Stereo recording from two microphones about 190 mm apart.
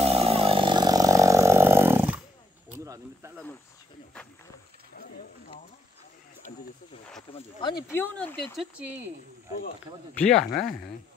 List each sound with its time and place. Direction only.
0.0 s a sound: 30° right (ahead or behind); by 2.1 s 10° right (ahead or behind)
2.8 s cricket: 15° right (ahead or behind)
7.3 s a sound: 30° left (ahead or behind)
7.9 s speech: 10° left (ahead or behind)
8.5 s speech: 10° right (ahead or behind)
10.1 s speech: 5° left (ahead or behind)